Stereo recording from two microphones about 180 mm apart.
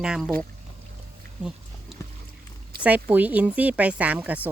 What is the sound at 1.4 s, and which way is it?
Speech, 5° right (ahead or behind).